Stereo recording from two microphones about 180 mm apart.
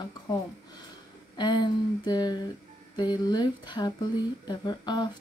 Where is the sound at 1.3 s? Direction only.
25° left (ahead or behind).